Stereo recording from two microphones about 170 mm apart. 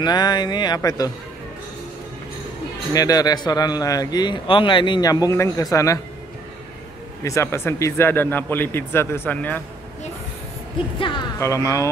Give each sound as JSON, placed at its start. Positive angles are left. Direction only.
{"t": 0.0, "sound": "a man's voice", "side_deg": 25}
{"t": 2.9, "sound": "a man's voice", "side_deg": 20}
{"t": 7.2, "sound": "speech", "side_deg": 15}
{"t": 11.0, "sound": "a man's voice", "side_deg": 30}
{"t": 11.3, "sound": "speech", "side_deg": 15}